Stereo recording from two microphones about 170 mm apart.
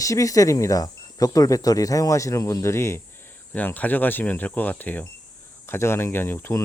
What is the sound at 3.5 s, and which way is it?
Speech, 10° left (ahead or behind).